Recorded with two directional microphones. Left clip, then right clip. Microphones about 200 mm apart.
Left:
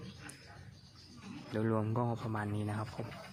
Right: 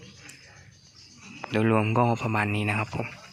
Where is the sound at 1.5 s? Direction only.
20° right (ahead or behind).